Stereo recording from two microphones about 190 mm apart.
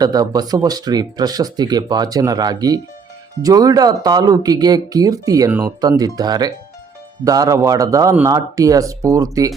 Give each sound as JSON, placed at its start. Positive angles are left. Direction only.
{"t": 0.0, "sound": "speech", "side_deg": -20}